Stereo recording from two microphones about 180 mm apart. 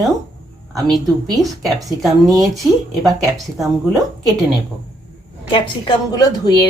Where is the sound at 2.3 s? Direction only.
20° right (ahead or behind).